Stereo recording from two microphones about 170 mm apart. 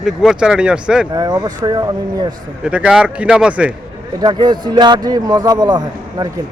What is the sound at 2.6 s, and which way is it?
A man's voice, 5° right (ahead or behind).